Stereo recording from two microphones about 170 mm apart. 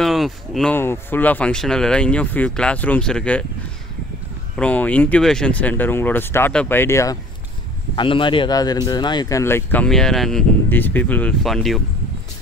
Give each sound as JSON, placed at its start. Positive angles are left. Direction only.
{"t": 0.0, "sound": "a sound", "side_deg": 0}
{"t": 0.7, "sound": "speech", "side_deg": 10}
{"t": 4.6, "sound": "speech", "side_deg": 10}
{"t": 7.9, "sound": "speech", "side_deg": 30}